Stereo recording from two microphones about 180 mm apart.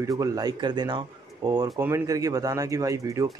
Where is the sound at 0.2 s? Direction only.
20° right (ahead or behind).